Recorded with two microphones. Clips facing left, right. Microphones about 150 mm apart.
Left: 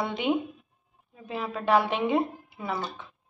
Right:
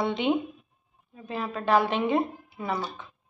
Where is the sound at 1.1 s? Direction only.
5° left (ahead or behind).